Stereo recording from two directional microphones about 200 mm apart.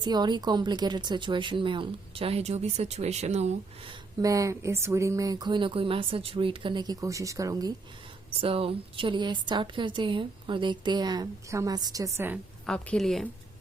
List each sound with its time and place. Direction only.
0.0 s a woman's voice: 20° right (ahead or behind)
4.2 s a woman's voice: 15° right (ahead or behind)
8.3 s a woman's voice: 30° right (ahead or behind); by 12.4 s 10° right (ahead or behind)
12.6 s a woman's voice: 5° left (ahead or behind)